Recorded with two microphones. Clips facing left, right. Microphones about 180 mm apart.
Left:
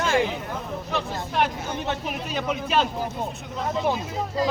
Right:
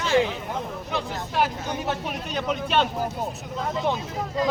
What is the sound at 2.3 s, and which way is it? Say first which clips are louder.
Speech: even; 5° left (ahead or behind).